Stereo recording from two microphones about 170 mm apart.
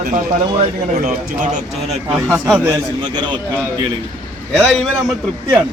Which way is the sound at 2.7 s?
25° right (ahead or behind).